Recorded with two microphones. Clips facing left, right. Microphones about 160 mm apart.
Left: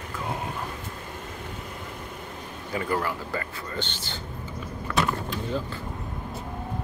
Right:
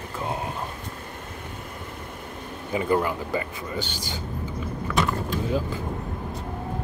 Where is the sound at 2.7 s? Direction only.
20° right (ahead or behind).